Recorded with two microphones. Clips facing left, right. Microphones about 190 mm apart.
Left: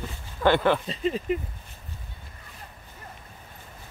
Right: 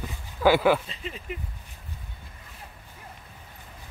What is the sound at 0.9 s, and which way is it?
Speech, 35° left (ahead or behind).